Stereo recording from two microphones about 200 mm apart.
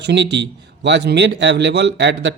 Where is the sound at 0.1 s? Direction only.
55° right (ahead or behind).